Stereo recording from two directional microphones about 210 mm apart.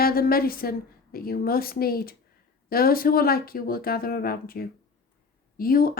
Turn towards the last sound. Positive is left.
turn(degrees=45)  # may be behind; listen again after turning